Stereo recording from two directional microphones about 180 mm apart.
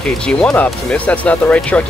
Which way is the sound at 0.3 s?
5° left (ahead or behind).